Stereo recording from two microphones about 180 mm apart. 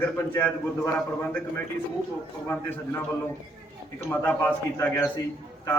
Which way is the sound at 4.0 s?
10° left (ahead or behind).